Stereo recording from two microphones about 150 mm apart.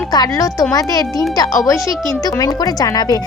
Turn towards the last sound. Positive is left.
turn(degrees=25)  # may be behind; listen again after turning